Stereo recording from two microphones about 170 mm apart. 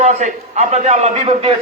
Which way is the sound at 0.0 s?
45° right (ahead or behind).